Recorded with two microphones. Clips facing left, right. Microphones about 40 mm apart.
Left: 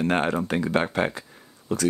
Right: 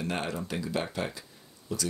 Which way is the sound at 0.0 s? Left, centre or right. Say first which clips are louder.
Left 9 dB; left.